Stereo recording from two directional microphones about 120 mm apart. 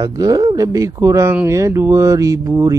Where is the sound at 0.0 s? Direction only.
30° right (ahead or behind).